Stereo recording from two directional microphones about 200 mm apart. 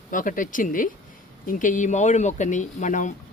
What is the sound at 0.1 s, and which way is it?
Speech, 40° left (ahead or behind).